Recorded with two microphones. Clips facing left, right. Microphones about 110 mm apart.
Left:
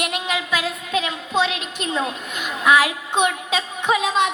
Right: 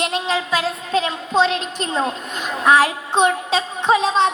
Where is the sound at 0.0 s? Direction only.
30° right (ahead or behind).